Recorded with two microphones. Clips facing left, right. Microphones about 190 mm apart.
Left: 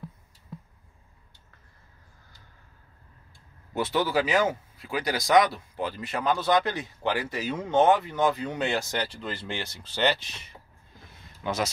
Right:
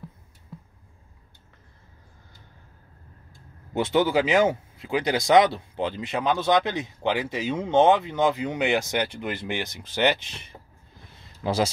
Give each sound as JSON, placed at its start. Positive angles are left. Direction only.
{"t": 3.7, "sound": "speech", "side_deg": -20}
{"t": 11.4, "sound": "speech", "side_deg": -30}